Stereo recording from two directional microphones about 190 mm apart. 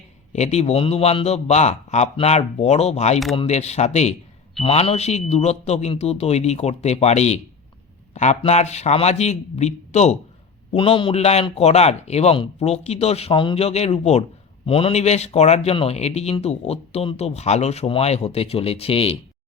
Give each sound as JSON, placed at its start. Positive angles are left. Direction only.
{"t": 0.3, "sound": "speech", "side_deg": 35}
{"t": 10.8, "sound": "speech", "side_deg": 25}